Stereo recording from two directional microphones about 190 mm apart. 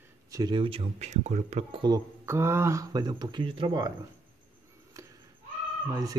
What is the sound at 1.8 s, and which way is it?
Speech, 20° right (ahead or behind).